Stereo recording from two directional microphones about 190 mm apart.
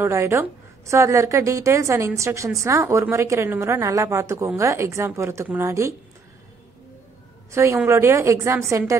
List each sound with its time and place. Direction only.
0.0 s a woman's voice: 15° right (ahead or behind)
7.5 s a woman's voice: 15° right (ahead or behind)